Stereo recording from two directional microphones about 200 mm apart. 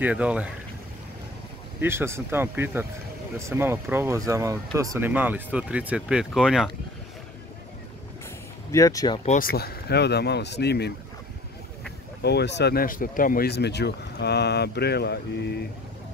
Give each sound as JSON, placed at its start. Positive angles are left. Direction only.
{"t": 0.0, "sound": "speech", "side_deg": -5}
{"t": 1.8, "sound": "speech", "side_deg": -10}
{"t": 8.7, "sound": "speech", "side_deg": 15}
{"t": 9.2, "sound": "speech", "side_deg": 35}
{"t": 9.5, "sound": "speech", "side_deg": 50}
{"t": 12.2, "sound": "speech", "side_deg": 55}